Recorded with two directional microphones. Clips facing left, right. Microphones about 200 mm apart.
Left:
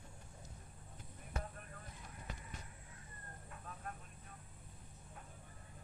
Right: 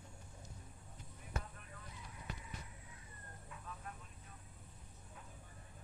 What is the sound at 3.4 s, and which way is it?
Vehicle, 50° left (ahead or behind).